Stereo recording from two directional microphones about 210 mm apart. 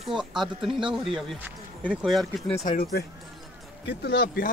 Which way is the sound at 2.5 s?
35° left (ahead or behind).